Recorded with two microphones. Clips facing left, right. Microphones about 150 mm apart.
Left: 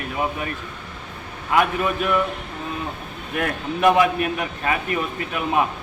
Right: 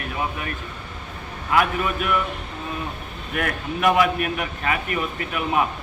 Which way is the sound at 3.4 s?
30° left (ahead or behind).